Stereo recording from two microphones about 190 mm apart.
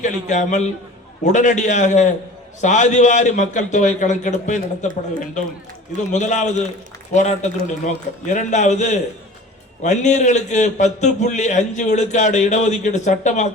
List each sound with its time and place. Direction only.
0.0 s a man's voice: 40° left (ahead or behind)
6.1 s a man's voice: 40° left (ahead or behind)